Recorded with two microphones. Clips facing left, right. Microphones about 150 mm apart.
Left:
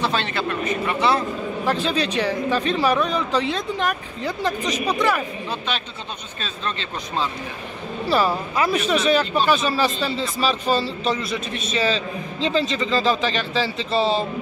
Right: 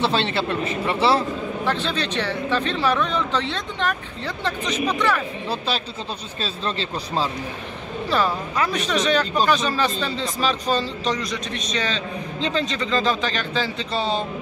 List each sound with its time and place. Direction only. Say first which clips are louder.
0.0 s a man's voice: right 2 dB; 30° right (ahead or behind)
1.7 s speech: left 4 dB; 10° left (ahead or behind)
6.4 s a man's voice: right 3 dB; 35° right (ahead or behind)
8.1 s a man's voice: left 2 dB; 10° left (ahead or behind)